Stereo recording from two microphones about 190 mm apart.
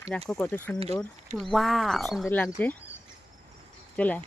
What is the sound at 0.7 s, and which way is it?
Speech, 30° right (ahead or behind).